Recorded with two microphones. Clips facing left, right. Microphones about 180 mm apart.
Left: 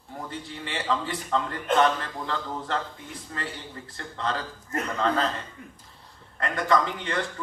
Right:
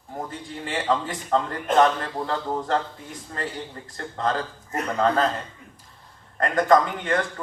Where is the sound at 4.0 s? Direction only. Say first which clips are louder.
Right 5 dB; 45° right (ahead or behind).